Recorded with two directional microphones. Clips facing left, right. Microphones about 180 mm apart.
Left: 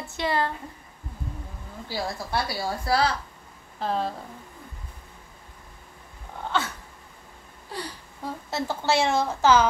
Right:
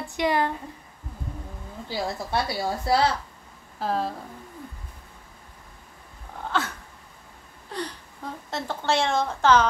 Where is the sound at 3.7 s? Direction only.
5° right (ahead or behind).